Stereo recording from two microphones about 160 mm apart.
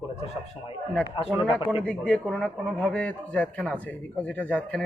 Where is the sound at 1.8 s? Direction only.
5° left (ahead or behind).